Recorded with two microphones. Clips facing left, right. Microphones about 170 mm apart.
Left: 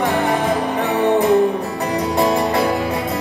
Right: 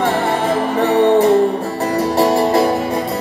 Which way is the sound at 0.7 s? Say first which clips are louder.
Right 6 dB; 35° right (ahead or behind).